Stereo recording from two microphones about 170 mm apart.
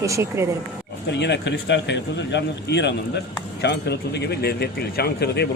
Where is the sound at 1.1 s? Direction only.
90° left.